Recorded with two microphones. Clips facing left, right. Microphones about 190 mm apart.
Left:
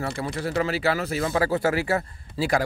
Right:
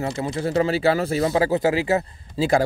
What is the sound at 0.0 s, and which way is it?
Speech, 20° right (ahead or behind).